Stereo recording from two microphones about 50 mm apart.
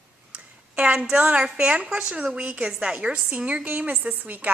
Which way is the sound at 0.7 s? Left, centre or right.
Right.